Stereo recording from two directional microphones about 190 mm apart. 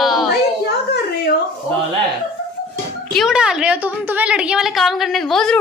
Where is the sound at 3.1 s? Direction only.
5° right (ahead or behind).